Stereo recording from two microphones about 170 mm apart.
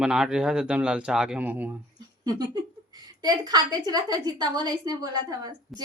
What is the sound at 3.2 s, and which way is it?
A woman's voice, 25° right (ahead or behind).